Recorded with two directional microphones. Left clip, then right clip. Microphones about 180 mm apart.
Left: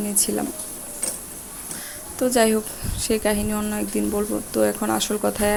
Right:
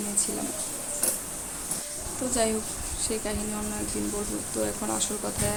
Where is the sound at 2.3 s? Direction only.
40° left (ahead or behind).